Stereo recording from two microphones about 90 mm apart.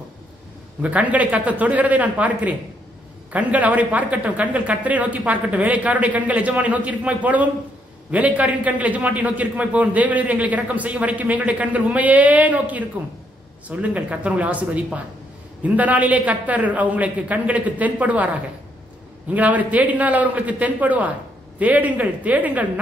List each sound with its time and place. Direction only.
0.8 s a man's voice: 15° right (ahead or behind)
19.3 s a man's voice: 15° right (ahead or behind)